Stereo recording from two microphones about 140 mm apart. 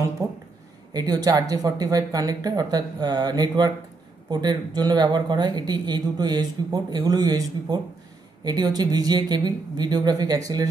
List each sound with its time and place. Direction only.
0.2 s speech: 20° right (ahead or behind)